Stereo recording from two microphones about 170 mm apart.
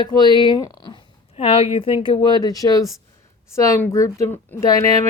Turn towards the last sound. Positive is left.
turn(degrees=20)  # may be behind; listen again after turning